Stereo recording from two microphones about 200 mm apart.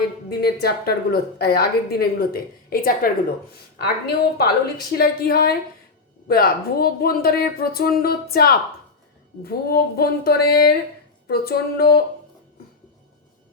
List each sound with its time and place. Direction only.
0.3 s a woman's voice: 50° left (ahead or behind)